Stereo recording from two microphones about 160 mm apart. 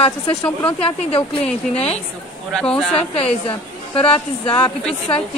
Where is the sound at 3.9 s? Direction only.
35° left (ahead or behind).